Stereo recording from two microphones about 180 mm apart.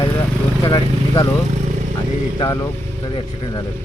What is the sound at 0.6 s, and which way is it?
Speech, 20° left (ahead or behind).